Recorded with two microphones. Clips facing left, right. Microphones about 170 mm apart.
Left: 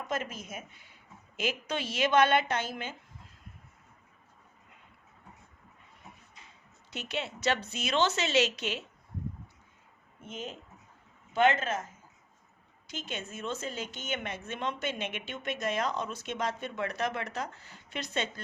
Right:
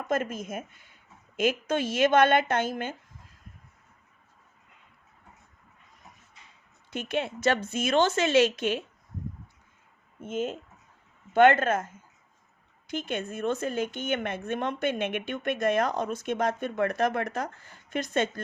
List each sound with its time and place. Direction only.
0.1 s a woman's voice: 50° right (ahead or behind)
6.9 s a woman's voice: 50° right (ahead or behind)
10.2 s speech: 50° right (ahead or behind)
12.9 s a woman's voice: 55° right (ahead or behind)